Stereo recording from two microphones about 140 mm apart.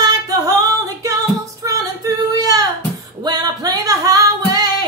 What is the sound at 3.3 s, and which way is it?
Music, 30° right (ahead or behind).